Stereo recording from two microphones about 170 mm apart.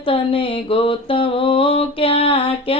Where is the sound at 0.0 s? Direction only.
30° left (ahead or behind).